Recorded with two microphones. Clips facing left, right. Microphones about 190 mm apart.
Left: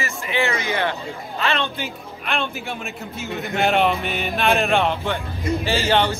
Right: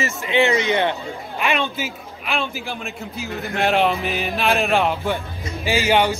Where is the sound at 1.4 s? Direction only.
10° right (ahead or behind).